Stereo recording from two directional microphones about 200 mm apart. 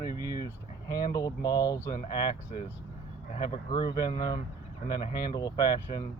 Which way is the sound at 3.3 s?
20° left (ahead or behind).